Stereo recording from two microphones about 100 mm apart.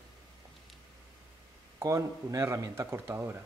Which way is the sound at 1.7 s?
30° right (ahead or behind).